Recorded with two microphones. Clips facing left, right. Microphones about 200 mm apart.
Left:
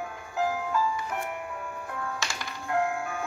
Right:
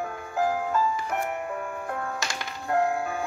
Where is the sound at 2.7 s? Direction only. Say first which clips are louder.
Right 3 dB; 35° right (ahead or behind).